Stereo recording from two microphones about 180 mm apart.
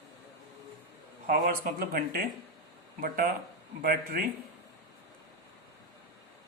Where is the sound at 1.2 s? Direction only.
50° right (ahead or behind).